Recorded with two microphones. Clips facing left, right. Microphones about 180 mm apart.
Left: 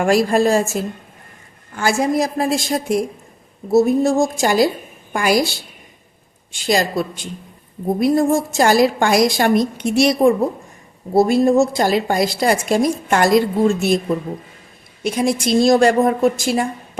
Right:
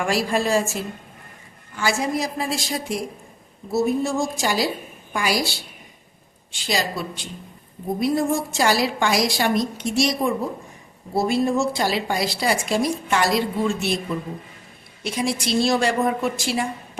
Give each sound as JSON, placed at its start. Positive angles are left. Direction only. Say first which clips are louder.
{"t": 0.0, "sound": "a woman's voice", "louder": "left 7 dB", "side_deg": 45}
{"t": 6.5, "sound": "a woman's voice", "louder": "left 7 dB", "side_deg": 50}
{"t": 11.1, "sound": "a woman's voice", "louder": "left 7 dB", "side_deg": 45}